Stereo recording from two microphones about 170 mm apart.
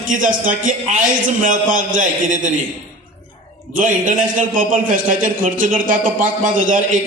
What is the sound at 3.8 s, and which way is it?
A man's voice, 50° right (ahead or behind).